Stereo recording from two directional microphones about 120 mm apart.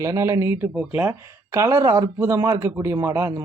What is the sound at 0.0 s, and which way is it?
Speech, 25° right (ahead or behind).